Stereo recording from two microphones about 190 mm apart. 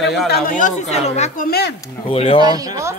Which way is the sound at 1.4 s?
55° left (ahead or behind).